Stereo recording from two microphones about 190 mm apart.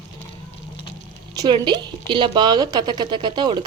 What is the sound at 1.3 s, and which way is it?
A woman's voice, 25° right (ahead or behind).